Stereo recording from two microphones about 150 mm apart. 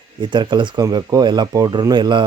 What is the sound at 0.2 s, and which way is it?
Speech, 30° right (ahead or behind).